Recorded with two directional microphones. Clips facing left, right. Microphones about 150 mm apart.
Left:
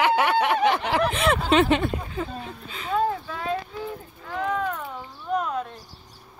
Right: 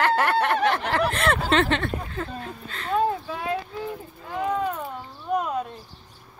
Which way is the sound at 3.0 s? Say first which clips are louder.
Right 1 dB; 10° right (ahead or behind).